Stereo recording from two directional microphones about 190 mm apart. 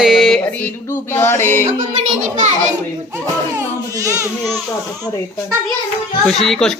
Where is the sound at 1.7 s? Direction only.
40° right (ahead or behind).